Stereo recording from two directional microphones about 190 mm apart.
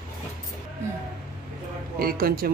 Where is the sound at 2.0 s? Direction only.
50° right (ahead or behind).